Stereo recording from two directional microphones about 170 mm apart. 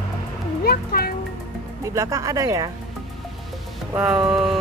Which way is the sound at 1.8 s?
20° right (ahead or behind).